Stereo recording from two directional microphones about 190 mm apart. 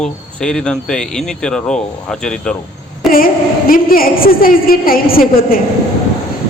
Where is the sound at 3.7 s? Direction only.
50° left (ahead or behind).